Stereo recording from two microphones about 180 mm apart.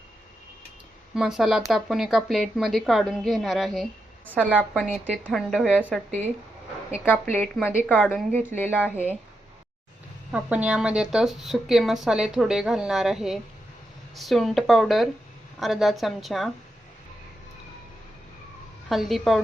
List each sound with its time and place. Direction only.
1.1 s a woman's voice: centre (ahead or behind)
6.1 s speech: 40° right (ahead or behind)
7.0 s a woman's voice: 10° left (ahead or behind)
10.3 s a woman's voice: 5° right (ahead or behind)
18.9 s a woman's voice: centre (ahead or behind)